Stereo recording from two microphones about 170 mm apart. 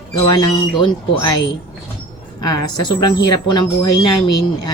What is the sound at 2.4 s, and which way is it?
Speech, 25° left (ahead or behind).